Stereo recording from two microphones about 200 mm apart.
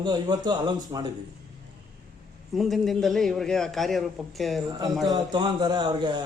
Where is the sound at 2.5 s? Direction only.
Centre (ahead or behind).